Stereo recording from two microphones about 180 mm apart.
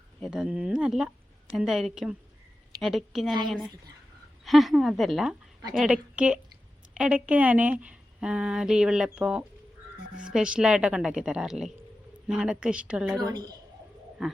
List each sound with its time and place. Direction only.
0.2 s a woman's voice: 5° right (ahead or behind)
13.2 s a woman's voice: 20° right (ahead or behind)
14.2 s a woman's voice: centre (ahead or behind)